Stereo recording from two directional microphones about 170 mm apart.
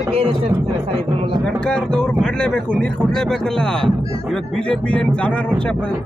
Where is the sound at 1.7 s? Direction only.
5° left (ahead or behind).